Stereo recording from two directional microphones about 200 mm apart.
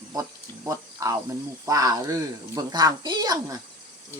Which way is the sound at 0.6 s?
15° right (ahead or behind).